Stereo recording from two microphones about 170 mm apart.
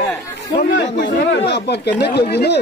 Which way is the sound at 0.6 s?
90° left.